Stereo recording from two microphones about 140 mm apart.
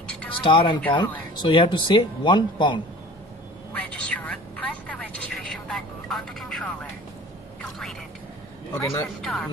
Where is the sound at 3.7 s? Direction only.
5° left (ahead or behind).